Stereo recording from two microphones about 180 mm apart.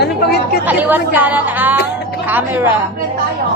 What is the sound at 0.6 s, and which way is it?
A woman's voice, 10° right (ahead or behind).